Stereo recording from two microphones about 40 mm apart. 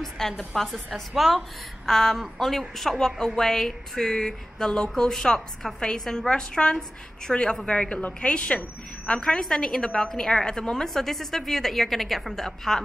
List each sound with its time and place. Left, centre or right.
0.2 s a woman's voice: centre
7.6 s a woman's voice: left
10.9 s speech: centre